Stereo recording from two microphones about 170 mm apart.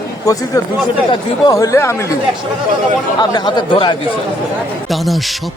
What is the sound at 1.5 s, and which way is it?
Speech, 20° left (ahead or behind).